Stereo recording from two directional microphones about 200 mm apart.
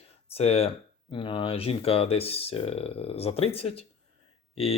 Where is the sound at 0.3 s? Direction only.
30° left (ahead or behind).